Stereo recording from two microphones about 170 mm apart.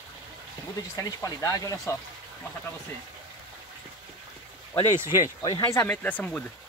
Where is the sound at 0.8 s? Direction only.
20° left (ahead or behind).